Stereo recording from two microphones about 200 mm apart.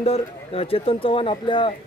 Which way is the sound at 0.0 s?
30° left (ahead or behind).